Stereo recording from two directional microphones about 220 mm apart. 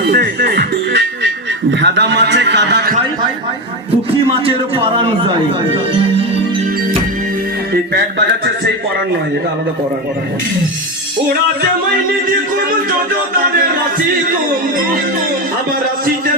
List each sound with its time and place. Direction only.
0.0 s music: 45° right (ahead or behind)
1.8 s a man's voice: 50° right (ahead or behind)
4.3 s a man's voice: 25° right (ahead or behind)